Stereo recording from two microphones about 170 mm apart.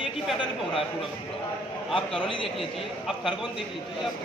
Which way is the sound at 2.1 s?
30° left (ahead or behind).